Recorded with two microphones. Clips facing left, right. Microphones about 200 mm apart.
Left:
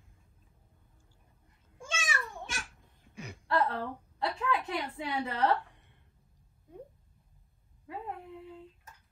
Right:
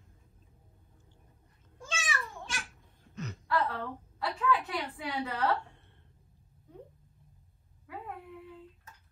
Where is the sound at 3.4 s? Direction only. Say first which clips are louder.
Left 2 dB; 30° left (ahead or behind).